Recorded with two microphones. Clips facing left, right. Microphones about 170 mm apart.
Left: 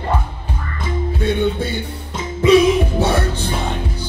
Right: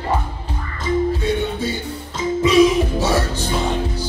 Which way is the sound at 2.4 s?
55° left (ahead or behind).